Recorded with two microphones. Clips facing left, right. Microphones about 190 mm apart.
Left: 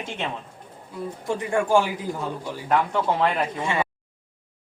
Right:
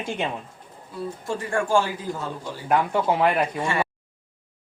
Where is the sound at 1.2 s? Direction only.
15° left (ahead or behind).